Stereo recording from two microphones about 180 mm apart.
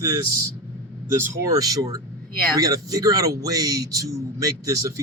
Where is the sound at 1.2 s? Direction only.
20° right (ahead or behind).